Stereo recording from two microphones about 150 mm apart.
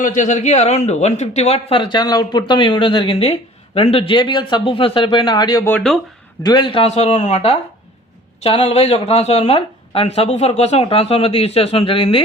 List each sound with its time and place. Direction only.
0.0 s speech: 60° left (ahead or behind); by 5.7 s 25° left (ahead or behind)
5.7 s speech: 5° left (ahead or behind)
6.4 s speech: 30° left (ahead or behind)